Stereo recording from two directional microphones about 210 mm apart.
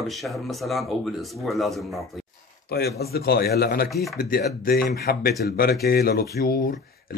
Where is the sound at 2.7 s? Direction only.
50° left (ahead or behind).